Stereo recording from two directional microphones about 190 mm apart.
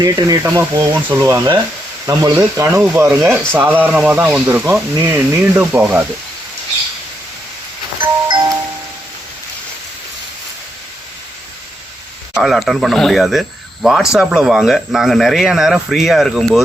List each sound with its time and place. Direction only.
0.0 s speech: 20° right (ahead or behind)
8.3 s music: 15° right (ahead or behind)
12.3 s speech: centre (ahead or behind)